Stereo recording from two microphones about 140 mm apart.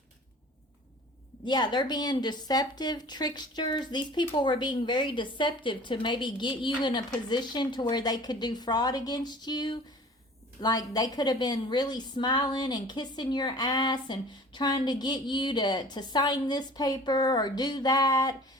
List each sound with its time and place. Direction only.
1.5 s a woman's voice: 30° left (ahead or behind)